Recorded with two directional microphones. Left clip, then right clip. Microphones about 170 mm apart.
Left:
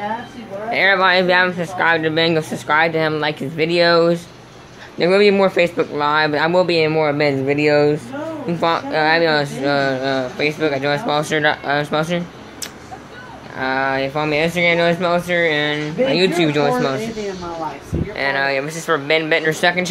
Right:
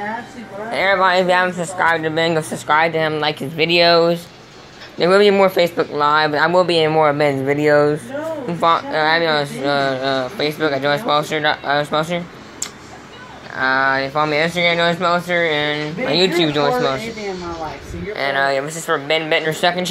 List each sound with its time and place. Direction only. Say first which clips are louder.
0.7 s speech: left 1 dB; 15° left (ahead or behind)
1.8 s speech: left 1 dB; 20° left (ahead or behind)
8.5 s speech: right 2 dB; 25° left (ahead or behind)
13.6 s speech: right 3 dB; 20° left (ahead or behind)
18.1 s speech: right 1 dB; 10° left (ahead or behind)